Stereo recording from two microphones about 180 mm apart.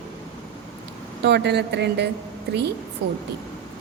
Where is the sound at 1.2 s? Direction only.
70° right (ahead or behind).